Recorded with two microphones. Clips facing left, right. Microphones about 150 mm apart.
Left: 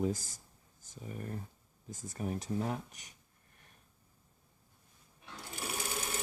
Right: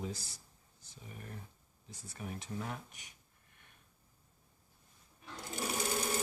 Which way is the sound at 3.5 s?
40° left (ahead or behind).